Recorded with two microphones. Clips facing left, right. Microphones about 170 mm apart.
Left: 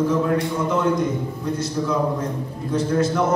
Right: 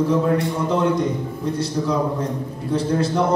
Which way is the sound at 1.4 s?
30° right (ahead or behind).